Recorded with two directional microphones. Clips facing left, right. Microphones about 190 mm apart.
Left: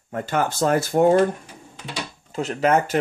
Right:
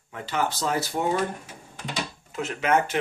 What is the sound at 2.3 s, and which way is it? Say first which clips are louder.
Speech: left 4 dB; 35° left (ahead or behind).